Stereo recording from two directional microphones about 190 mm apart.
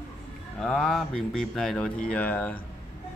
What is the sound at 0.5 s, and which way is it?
A man's voice, 5° left (ahead or behind).